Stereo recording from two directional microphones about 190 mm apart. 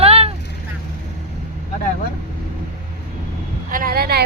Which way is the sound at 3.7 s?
50° right (ahead or behind).